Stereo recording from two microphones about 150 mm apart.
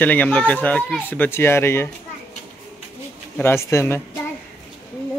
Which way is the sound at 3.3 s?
15° left (ahead or behind).